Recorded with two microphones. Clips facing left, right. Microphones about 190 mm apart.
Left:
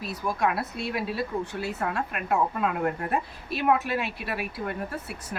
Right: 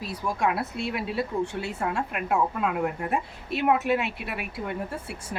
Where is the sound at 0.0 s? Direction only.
30° right (ahead or behind).